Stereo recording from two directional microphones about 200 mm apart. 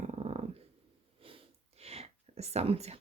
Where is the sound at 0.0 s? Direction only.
35° right (ahead or behind).